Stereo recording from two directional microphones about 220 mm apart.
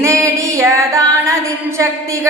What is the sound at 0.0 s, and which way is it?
Female singing, 15° right (ahead or behind).